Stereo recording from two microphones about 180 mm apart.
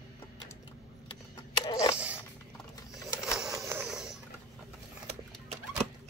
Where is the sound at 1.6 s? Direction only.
20° left (ahead or behind).